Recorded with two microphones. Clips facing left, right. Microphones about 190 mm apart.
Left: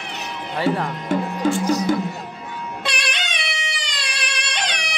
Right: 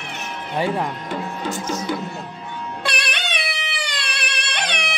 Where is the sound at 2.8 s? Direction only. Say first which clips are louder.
Right 2 dB; 60° right (ahead or behind).